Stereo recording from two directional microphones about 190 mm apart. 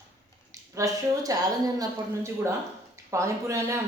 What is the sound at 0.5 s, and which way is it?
Speech, 15° right (ahead or behind).